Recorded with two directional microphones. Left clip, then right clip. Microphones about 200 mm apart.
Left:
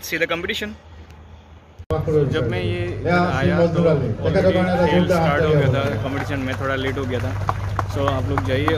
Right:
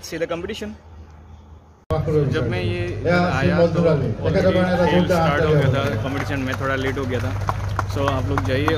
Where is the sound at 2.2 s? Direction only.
Centre (ahead or behind).